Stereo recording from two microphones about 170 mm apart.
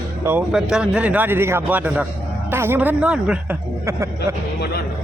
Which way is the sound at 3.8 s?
20° right (ahead or behind).